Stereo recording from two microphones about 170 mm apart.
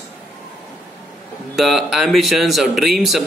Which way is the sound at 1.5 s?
Centre (ahead or behind).